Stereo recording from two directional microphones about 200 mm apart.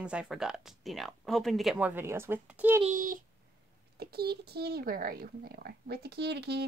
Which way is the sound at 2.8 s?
40° right (ahead or behind).